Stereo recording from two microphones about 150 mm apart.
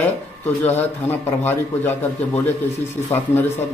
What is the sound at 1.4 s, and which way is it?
Speech, 15° left (ahead or behind).